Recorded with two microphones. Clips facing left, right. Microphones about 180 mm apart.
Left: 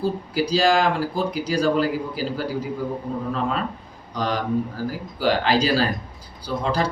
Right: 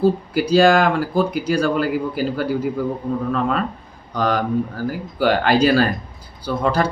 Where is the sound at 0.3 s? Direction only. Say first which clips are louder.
Right 4 dB; 55° right (ahead or behind).